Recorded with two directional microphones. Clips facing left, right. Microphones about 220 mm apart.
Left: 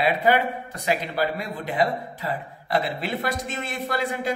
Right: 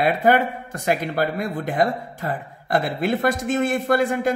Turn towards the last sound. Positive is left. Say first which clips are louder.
# right 7 dB
turn(degrees=-50)  # may be behind; listen again after turning